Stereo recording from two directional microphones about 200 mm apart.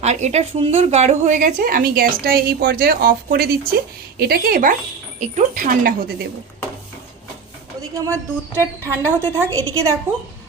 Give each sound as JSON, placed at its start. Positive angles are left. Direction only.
{"t": 0.0, "sound": "a woman's voice", "side_deg": -35}
{"t": 7.8, "sound": "a woman's voice", "side_deg": -15}